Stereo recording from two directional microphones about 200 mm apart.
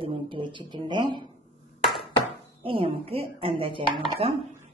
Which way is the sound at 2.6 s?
25° right (ahead or behind).